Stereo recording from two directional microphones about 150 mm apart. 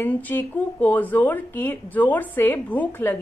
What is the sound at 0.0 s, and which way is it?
A woman's voice, 10° left (ahead or behind).